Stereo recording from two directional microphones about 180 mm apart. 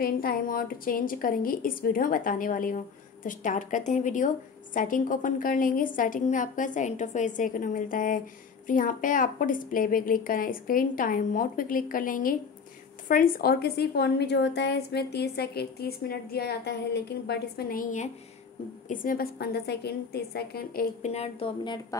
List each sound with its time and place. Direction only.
0.0 s a woman's voice: 55° left (ahead or behind)
21.0 s a woman's voice: 35° left (ahead or behind)